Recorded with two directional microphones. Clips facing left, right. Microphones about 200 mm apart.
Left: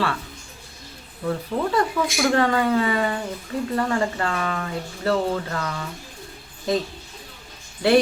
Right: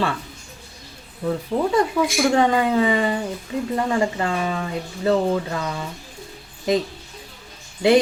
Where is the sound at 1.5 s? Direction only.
20° right (ahead or behind).